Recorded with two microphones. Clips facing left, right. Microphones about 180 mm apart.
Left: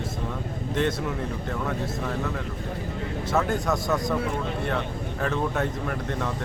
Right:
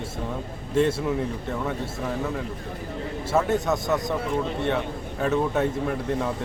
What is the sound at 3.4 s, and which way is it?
Speech, 25° right (ahead or behind).